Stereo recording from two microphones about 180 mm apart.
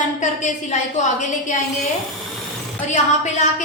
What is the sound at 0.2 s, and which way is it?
A woman's voice, 40° left (ahead or behind).